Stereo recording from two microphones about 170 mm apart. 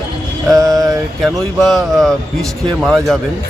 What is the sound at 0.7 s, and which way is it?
Mantra, 20° right (ahead or behind).